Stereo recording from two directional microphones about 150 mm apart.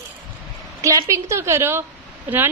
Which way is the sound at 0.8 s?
20° right (ahead or behind).